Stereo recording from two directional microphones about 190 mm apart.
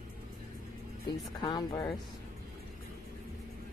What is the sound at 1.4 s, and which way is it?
Speech, 25° left (ahead or behind).